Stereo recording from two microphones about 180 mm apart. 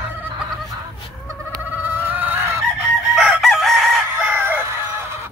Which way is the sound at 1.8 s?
10° right (ahead or behind).